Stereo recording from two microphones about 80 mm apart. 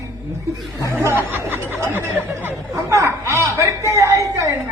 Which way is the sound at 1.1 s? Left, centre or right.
Right.